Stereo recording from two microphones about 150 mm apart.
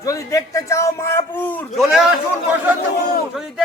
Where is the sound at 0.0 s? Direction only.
20° left (ahead or behind).